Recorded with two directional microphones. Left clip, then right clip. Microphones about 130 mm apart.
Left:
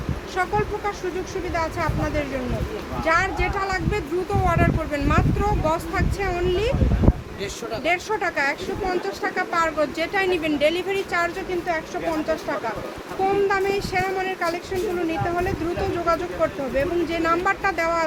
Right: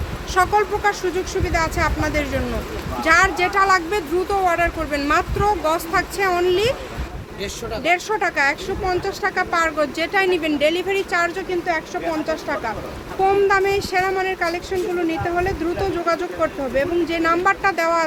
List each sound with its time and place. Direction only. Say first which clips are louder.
0.3 s speech: right 6 dB; 55° right (ahead or behind)
7.9 s speech: right 4 dB; 50° right (ahead or behind)
12.3 s speech: right 2 dB; 55° right (ahead or behind)